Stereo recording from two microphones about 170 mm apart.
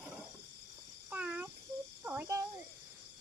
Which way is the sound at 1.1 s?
10° right (ahead or behind).